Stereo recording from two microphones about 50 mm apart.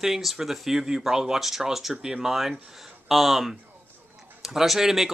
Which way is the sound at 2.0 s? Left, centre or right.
Centre.